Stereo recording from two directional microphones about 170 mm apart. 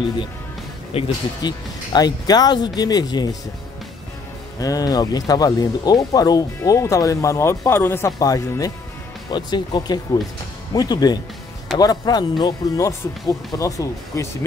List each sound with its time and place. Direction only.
0.9 s speech: 30° left (ahead or behind)
4.6 s speech: 20° left (ahead or behind)